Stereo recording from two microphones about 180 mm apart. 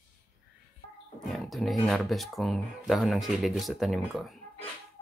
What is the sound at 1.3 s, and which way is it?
Speech, centre (ahead or behind).